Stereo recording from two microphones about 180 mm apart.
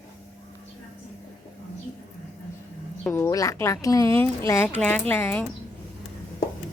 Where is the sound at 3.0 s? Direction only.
15° left (ahead or behind).